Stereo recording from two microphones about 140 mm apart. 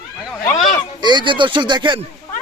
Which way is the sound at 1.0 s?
35° right (ahead or behind).